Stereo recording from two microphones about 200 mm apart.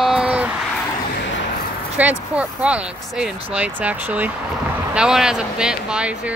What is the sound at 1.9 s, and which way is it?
Speech, 5° right (ahead or behind).